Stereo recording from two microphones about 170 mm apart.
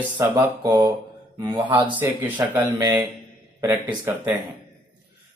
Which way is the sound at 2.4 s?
15° right (ahead or behind).